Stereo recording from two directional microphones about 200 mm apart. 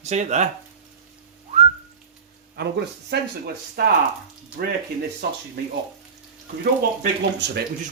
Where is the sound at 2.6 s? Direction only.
55° right (ahead or behind).